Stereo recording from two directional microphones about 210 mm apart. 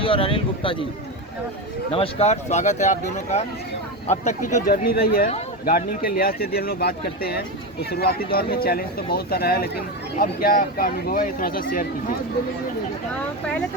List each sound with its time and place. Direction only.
0.0 s speech: 25° left (ahead or behind)
1.9 s speech: 30° left (ahead or behind); by 11.6 s 45° left (ahead or behind)